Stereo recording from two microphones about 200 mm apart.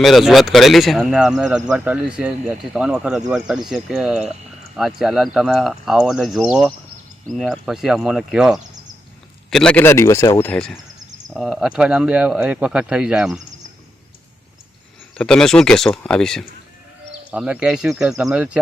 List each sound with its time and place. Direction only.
0.0 s speech: centre (ahead or behind)
15.1 s speech: 5° left (ahead or behind)